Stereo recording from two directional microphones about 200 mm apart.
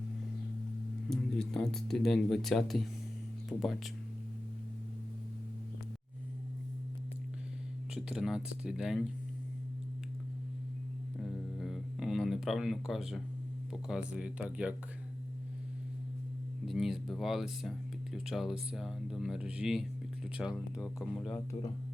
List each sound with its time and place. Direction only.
1.1 s speech: centre (ahead or behind)
7.9 s speech: 5° right (ahead or behind)
11.2 s a sound: centre (ahead or behind)
13.7 s speech: 5° right (ahead or behind)
16.6 s speech: centre (ahead or behind)
21.2 s speech: 15° left (ahead or behind)